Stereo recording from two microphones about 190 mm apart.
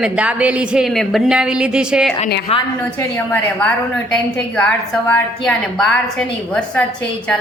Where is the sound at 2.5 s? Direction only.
30° left (ahead or behind).